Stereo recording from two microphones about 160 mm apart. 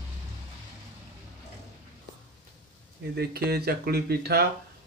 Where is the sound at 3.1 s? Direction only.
75° right (ahead or behind).